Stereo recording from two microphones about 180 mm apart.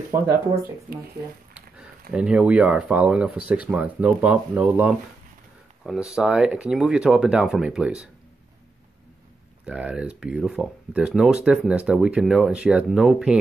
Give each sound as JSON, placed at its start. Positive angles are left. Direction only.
{"t": 0.1, "sound": "speech", "side_deg": -15}
{"t": 1.5, "sound": "speech", "side_deg": -5}
{"t": 9.7, "sound": "speech", "side_deg": -5}